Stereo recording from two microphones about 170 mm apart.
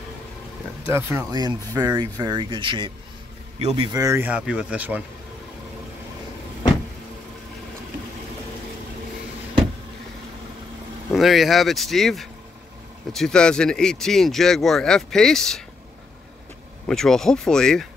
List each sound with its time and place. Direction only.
0.8 s a man's voice: 15° right (ahead or behind)
11.1 s speech: centre (ahead or behind)
16.8 s speech: 5° left (ahead or behind)